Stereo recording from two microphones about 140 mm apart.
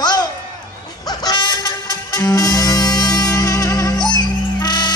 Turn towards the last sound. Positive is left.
turn(degrees=30)  # may be behind; listen again after turning